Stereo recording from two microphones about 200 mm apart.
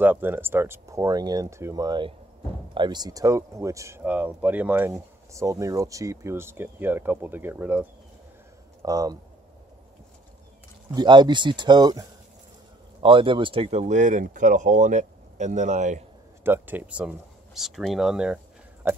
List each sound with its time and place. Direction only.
0.0 s speech: 10° right (ahead or behind)
10.9 s speech: 20° right (ahead or behind); by 16.0 s 35° right (ahead or behind)
16.4 s speech: 10° right (ahead or behind)